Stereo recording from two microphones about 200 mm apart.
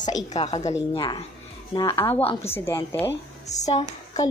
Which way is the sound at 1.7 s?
10° left (ahead or behind).